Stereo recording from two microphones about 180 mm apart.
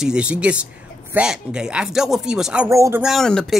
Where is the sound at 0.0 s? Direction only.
5° right (ahead or behind).